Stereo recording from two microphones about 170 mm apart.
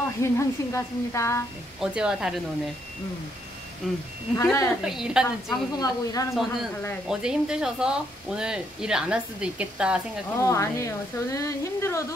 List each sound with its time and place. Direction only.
0.2 s speech: 15° left (ahead or behind)
1.8 s speech: 5° right (ahead or behind)
3.8 s speech: centre (ahead or behind)
4.4 s speech: 20° left (ahead or behind)
4.8 s speech: 5° right (ahead or behind)
5.5 s speech: 20° left (ahead or behind)
7.1 s speech: 5° right (ahead or behind)
10.4 s speech: 15° left (ahead or behind)